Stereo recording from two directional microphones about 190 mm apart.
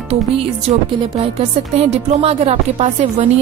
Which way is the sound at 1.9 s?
30° right (ahead or behind).